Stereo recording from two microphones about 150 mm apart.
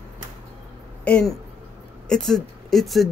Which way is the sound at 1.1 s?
5° left (ahead or behind).